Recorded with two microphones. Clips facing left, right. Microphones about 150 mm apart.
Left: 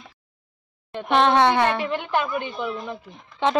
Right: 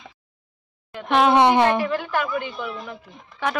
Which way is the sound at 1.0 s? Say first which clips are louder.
Right 1 dB; 5° right (ahead or behind).